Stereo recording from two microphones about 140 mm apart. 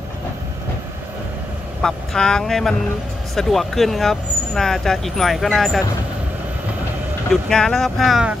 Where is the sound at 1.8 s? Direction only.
5° left (ahead or behind).